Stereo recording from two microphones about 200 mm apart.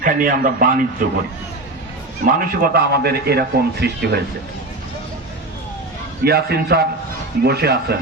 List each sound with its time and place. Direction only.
0.0 s a man's voice: 45° right (ahead or behind)
2.2 s a man's voice: 45° right (ahead or behind)
6.2 s a man's voice: 50° right (ahead or behind)